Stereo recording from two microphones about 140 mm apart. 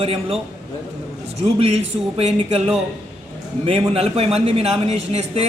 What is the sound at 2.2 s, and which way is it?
A man's voice, 50° right (ahead or behind).